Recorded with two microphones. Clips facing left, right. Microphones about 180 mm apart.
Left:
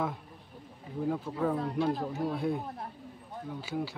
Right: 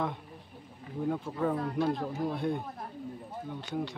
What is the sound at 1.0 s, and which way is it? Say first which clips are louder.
Speech: even; centre (ahead or behind).